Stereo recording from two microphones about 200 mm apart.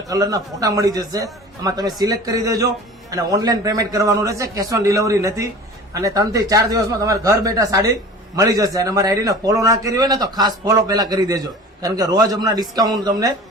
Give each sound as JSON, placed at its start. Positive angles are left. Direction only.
{"t": 0.1, "sound": "a man's voice", "side_deg": -15}